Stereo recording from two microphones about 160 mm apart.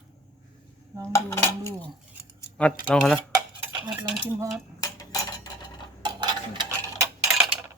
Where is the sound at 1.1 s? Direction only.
15° left (ahead or behind).